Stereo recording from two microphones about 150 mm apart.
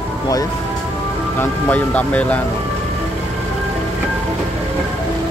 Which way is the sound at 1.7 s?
10° left (ahead or behind).